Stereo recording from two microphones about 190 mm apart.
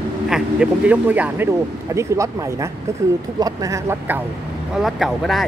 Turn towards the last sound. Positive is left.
turn(degrees=0)  # may be behind; listen again after turning